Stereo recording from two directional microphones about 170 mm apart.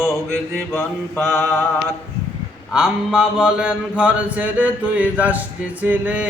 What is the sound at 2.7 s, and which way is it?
Mantra, 5° right (ahead or behind).